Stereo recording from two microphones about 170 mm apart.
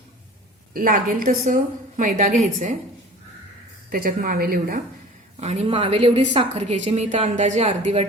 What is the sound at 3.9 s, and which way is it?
Speech, 55° right (ahead or behind).